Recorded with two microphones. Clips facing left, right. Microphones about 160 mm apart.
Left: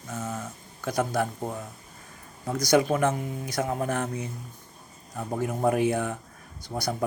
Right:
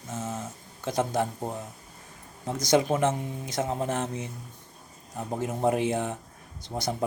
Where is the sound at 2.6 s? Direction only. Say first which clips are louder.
Left 1 dB; 25° right (ahead or behind).